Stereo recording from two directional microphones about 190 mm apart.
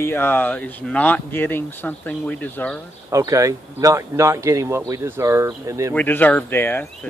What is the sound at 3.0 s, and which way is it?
Speech, 15° right (ahead or behind).